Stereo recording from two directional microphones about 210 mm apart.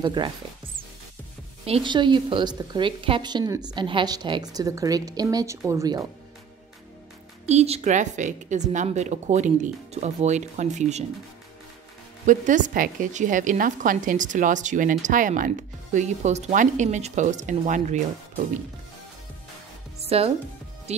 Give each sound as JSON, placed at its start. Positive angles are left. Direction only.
{"t": 0.0, "sound": "a woman's voice", "side_deg": -20}
{"t": 1.7, "sound": "a woman's voice", "side_deg": -25}
{"t": 7.4, "sound": "a woman's voice", "side_deg": -30}
{"t": 12.3, "sound": "a woman's voice", "side_deg": -35}
{"t": 20.1, "sound": "speech", "side_deg": -30}